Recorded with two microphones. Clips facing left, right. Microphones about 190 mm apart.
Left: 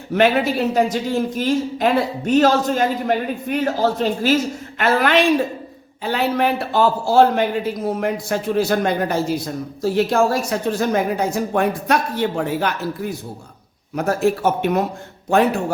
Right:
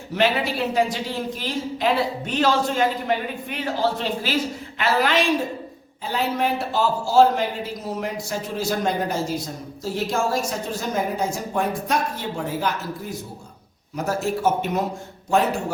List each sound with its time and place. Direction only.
0.1 s a woman's voice: 50° left (ahead or behind)
4.8 s a man's voice: 55° left (ahead or behind)
6.0 s a man's voice: 70° left (ahead or behind)